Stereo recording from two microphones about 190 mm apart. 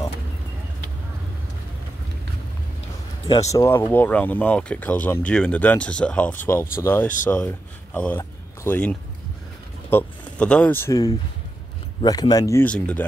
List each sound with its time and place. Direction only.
3.3 s speech: 15° left (ahead or behind)